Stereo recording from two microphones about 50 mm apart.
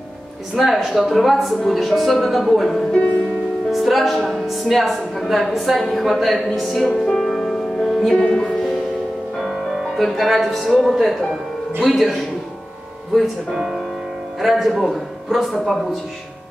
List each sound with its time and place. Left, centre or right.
0.6 s speech: centre
7.1 s music: centre
9.4 s a man's voice: centre